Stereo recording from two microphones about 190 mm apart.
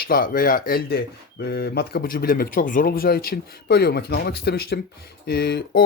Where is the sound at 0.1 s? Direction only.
50° left (ahead or behind).